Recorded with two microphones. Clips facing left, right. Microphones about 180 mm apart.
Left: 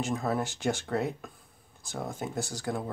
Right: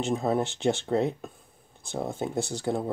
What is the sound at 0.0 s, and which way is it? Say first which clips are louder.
Speech: right 4 dB; 25° right (ahead or behind).